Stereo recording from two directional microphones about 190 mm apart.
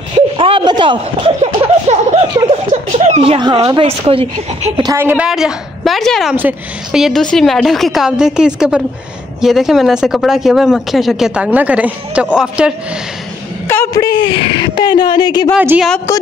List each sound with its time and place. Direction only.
0.4 s a sound: 25° right (ahead or behind)
2.7 s speech: 40° right (ahead or behind)
4.9 s speech: 10° right (ahead or behind)
13.7 s a woman's voice: 15° left (ahead or behind)
15.5 s a woman's voice: 5° right (ahead or behind)